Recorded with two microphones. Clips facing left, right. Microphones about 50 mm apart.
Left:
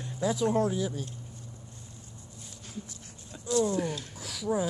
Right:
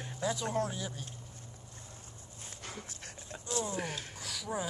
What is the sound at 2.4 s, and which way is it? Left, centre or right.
Dog, right.